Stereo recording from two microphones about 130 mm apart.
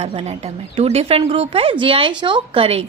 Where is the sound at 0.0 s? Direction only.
50° right (ahead or behind).